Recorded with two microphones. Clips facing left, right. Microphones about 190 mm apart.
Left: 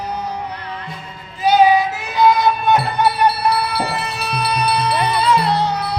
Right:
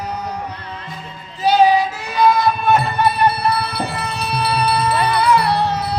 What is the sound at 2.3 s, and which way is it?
Music, 10° left (ahead or behind).